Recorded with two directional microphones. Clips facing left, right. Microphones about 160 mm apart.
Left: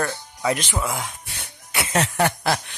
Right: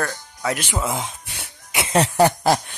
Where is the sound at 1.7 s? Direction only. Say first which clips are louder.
Right 4 dB; 30° right (ahead or behind).